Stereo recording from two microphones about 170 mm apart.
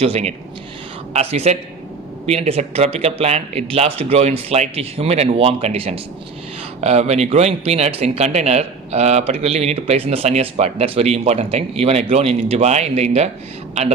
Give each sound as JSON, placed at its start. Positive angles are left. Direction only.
{"t": 0.0, "sound": "speech", "side_deg": -40}